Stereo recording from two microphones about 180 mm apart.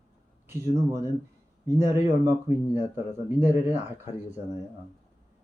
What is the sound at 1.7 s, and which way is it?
Speech, 15° right (ahead or behind).